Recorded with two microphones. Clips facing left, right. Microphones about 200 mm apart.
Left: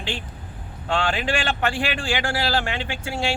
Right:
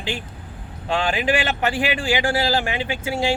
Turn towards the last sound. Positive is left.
turn(degrees=-15)  # may be behind; listen again after turning